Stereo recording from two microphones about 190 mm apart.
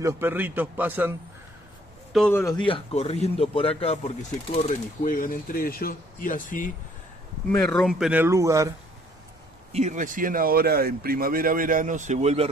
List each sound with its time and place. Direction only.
0.0 s a man's voice: 10° right (ahead or behind)
2.1 s speech: 5° left (ahead or behind)
2.4 s speech: 25° left (ahead or behind); by 6.7 s 45° left (ahead or behind)
7.5 s speech: 5° left (ahead or behind)
8.1 s a man's voice: 15° right (ahead or behind)
9.7 s speech: 35° right (ahead or behind)